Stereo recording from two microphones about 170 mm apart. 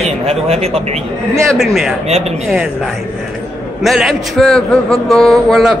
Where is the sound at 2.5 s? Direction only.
5° right (ahead or behind).